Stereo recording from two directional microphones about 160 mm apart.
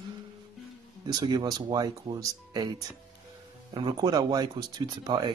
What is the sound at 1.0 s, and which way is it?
Speech, 25° right (ahead or behind).